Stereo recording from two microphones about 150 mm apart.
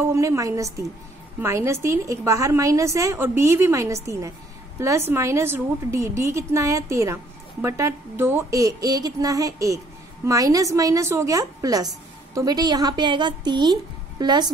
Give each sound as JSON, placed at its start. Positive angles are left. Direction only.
{"t": 0.0, "sound": "a woman's voice", "side_deg": -20}